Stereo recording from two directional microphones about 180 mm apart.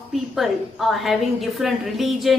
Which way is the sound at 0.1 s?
Centre (ahead or behind).